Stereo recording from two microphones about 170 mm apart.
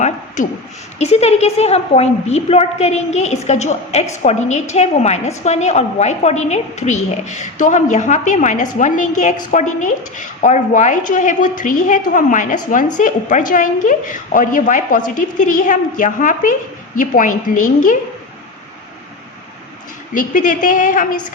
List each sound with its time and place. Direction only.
0.4 s a woman's voice: 45° left (ahead or behind)
20.1 s a woman's voice: 50° left (ahead or behind)